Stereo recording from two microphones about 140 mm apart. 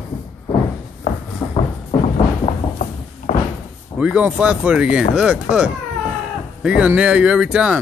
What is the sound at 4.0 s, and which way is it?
Speech, 10° right (ahead or behind).